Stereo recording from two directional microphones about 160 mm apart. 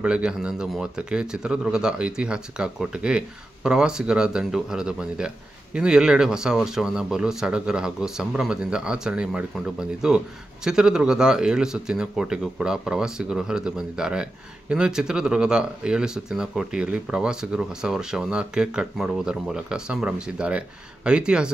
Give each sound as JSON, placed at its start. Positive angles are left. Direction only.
{"t": 0.0, "sound": "speech", "side_deg": -5}